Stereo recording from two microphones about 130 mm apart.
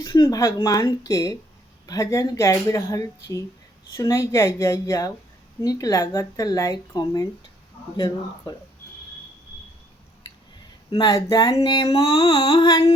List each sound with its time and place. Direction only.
0.0 s speech: 25° left (ahead or behind)
11.1 s speech: 25° left (ahead or behind)
11.7 s a sound: 40° left (ahead or behind)
11.9 s speech: 25° left (ahead or behind)
12.2 s music: 45° left (ahead or behind)
12.6 s speech: 30° left (ahead or behind)